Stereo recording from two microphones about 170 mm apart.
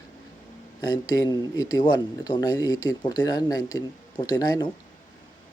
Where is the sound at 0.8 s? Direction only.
20° left (ahead or behind).